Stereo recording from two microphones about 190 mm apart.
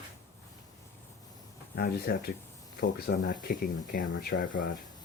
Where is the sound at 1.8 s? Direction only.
55° left (ahead or behind).